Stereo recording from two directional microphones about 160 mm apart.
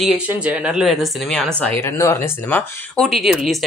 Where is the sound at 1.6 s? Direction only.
15° left (ahead or behind).